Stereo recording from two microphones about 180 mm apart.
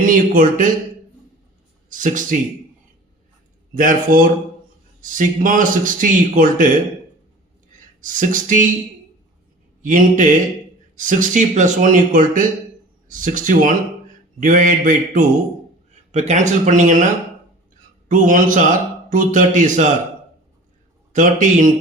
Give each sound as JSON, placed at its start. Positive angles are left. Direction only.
{"t": 0.0, "sound": "a man's voice", "side_deg": -50}
{"t": 1.9, "sound": "a man's voice", "side_deg": -45}
{"t": 3.8, "sound": "a man's voice", "side_deg": -50}
{"t": 8.0, "sound": "a man's voice", "side_deg": -45}
{"t": 9.8, "sound": "a man's voice", "side_deg": -45}
{"t": 18.1, "sound": "a man's voice", "side_deg": -45}
{"t": 21.1, "sound": "a man's voice", "side_deg": -45}